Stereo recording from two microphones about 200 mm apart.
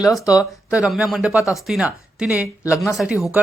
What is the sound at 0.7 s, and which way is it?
Speech, 5° right (ahead or behind).